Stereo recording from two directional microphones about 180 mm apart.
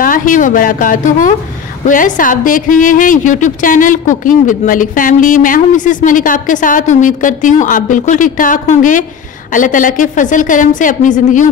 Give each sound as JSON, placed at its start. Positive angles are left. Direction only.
{"t": 0.0, "sound": "a woman's voice", "side_deg": 50}